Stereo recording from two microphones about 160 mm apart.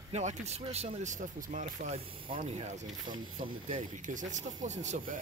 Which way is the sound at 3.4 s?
35° right (ahead or behind).